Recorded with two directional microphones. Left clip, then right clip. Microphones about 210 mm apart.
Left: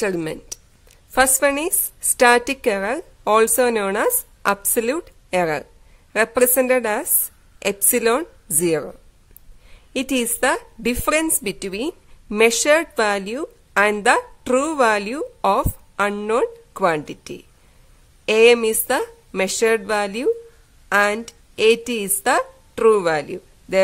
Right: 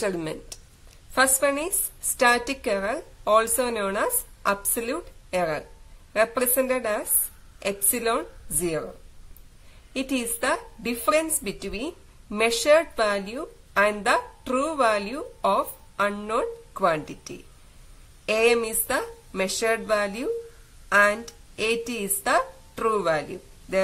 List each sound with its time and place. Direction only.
0.0 s a woman's voice: 45° left (ahead or behind)
9.9 s a woman's voice: 50° left (ahead or behind)